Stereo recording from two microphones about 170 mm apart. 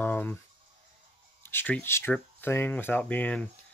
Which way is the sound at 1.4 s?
10° left (ahead or behind).